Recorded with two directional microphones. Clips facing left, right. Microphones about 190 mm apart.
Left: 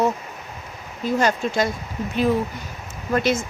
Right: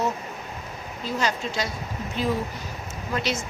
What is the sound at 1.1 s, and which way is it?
Speech, 50° left (ahead or behind).